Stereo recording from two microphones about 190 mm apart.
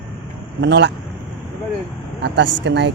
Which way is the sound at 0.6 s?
65° right (ahead or behind).